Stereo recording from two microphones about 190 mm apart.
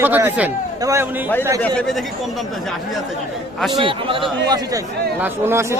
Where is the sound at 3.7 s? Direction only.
25° right (ahead or behind).